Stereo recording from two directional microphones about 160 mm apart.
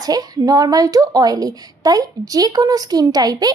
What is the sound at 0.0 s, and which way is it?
A woman's voice, 25° right (ahead or behind).